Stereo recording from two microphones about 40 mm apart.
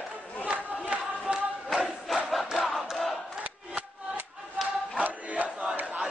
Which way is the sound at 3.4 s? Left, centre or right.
Right.